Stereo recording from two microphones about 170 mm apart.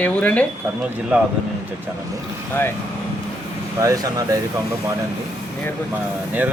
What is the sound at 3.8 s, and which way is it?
Speech, 20° right (ahead or behind).